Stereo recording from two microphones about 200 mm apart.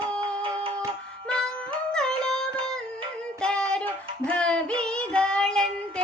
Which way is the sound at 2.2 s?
5° left (ahead or behind).